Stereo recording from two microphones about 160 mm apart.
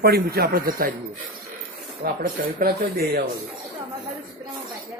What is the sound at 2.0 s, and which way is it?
Speech, 65° right (ahead or behind).